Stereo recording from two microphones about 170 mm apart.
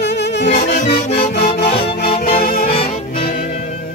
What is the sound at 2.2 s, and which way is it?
Music, 60° left (ahead or behind).